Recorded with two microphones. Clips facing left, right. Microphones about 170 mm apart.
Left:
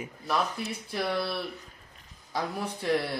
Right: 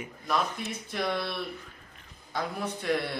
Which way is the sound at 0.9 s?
5° left (ahead or behind).